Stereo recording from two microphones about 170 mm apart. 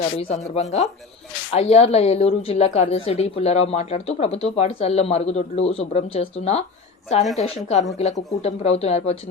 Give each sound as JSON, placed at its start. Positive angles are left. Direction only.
{"t": 0.3, "sound": "a woman's voice", "side_deg": 40}